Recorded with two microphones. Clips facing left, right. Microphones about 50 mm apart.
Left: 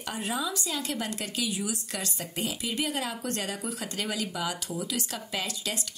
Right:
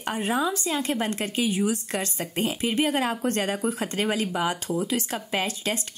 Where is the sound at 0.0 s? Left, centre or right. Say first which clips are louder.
Right 6 dB; right.